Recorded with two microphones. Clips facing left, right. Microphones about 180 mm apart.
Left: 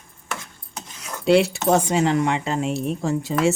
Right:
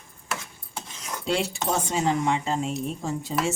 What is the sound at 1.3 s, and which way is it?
A woman's voice, 70° left (ahead or behind).